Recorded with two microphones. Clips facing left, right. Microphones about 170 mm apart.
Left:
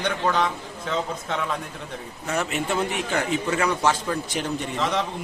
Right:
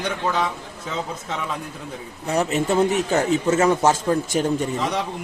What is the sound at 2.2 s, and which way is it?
A man's voice, 35° right (ahead or behind).